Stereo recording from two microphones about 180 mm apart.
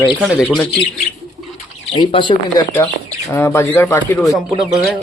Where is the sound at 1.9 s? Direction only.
25° left (ahead or behind).